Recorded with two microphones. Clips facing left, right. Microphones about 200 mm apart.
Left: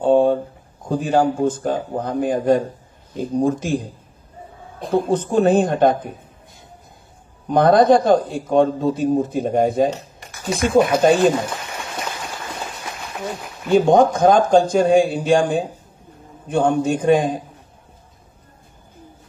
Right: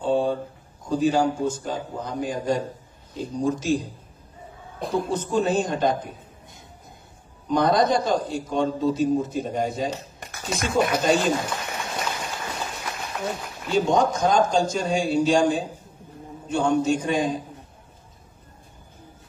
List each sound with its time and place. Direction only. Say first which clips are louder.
0.0 s a sound: left 8 dB; 55° left (ahead or behind)
0.8 s a man's voice: left 3 dB; 55° left (ahead or behind)
4.9 s a man's voice: left 6 dB; 55° left (ahead or behind)
7.4 s a man's voice: left 7 dB; 55° left (ahead or behind)
13.7 s a man's voice: left 7 dB; 55° left (ahead or behind)